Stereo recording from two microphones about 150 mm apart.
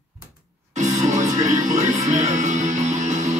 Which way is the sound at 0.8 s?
55° right (ahead or behind).